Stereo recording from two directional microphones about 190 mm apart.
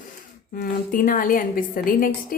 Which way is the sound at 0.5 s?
45° left (ahead or behind).